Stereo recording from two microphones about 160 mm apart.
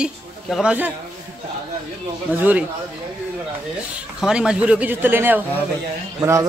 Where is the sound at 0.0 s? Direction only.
5° right (ahead or behind).